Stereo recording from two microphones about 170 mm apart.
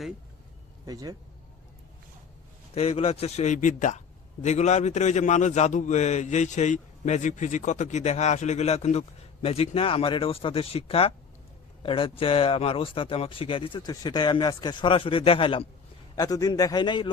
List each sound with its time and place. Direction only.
0.9 s speech: 20° right (ahead or behind)
2.7 s a man's voice: 35° left (ahead or behind)
16.1 s a man's voice: 20° left (ahead or behind)